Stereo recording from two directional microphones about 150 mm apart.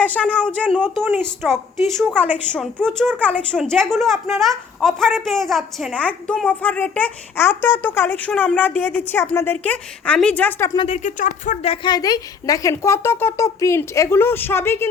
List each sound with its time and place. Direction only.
0.0 s a woman's voice: 10° left (ahead or behind)
10.8 s speech: 50° left (ahead or behind)
11.9 s a woman's voice: 25° left (ahead or behind)